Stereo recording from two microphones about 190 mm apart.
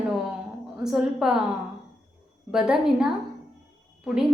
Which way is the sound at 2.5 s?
5° right (ahead or behind).